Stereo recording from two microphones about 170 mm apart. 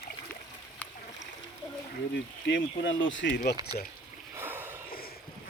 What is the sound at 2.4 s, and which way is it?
Speech, 90° left.